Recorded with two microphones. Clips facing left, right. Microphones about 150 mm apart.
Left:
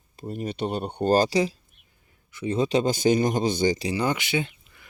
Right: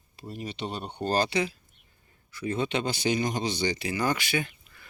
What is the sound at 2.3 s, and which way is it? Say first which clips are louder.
Speech: left 3 dB; 20° left (ahead or behind).